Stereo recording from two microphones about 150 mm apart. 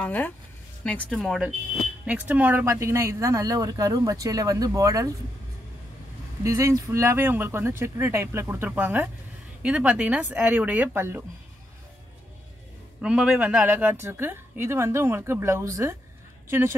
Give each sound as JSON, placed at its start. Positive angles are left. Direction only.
{"t": 0.0, "sound": "speech", "side_deg": 10}
{"t": 1.1, "sound": "speech", "side_deg": 0}
{"t": 6.4, "sound": "a woman's voice", "side_deg": -20}
{"t": 13.0, "sound": "a woman's voice", "side_deg": -5}